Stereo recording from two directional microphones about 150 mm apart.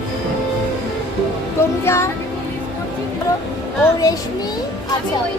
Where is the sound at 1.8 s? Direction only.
15° left (ahead or behind).